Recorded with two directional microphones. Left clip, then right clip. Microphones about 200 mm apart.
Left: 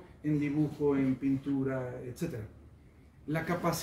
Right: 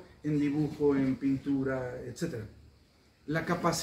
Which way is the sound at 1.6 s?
25° left (ahead or behind).